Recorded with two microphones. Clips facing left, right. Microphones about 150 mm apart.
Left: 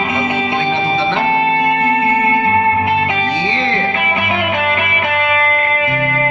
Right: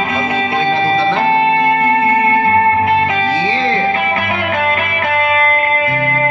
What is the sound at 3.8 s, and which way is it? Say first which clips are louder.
Music: right 2 dB; 30° right (ahead or behind).